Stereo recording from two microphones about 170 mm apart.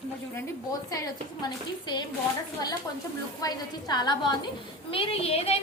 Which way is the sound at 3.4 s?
25° left (ahead or behind).